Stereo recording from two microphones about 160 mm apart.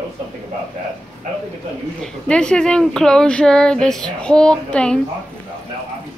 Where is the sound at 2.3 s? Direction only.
5° left (ahead or behind).